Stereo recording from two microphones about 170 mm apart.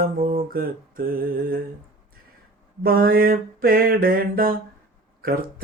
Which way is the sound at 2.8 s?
60° right (ahead or behind).